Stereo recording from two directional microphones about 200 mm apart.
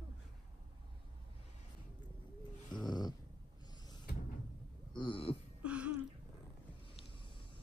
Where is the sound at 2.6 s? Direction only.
20° left (ahead or behind).